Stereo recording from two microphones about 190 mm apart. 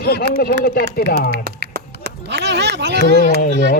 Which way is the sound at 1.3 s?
55° right (ahead or behind).